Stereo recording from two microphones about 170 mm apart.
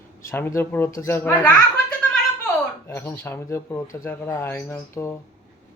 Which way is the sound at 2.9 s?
15° left (ahead or behind).